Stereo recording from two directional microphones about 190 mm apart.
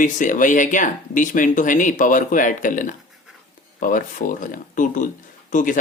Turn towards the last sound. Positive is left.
turn(degrees=45)  # may be behind; listen again after turning